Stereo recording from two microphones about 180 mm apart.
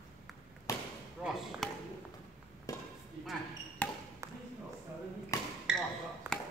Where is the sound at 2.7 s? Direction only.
20° left (ahead or behind).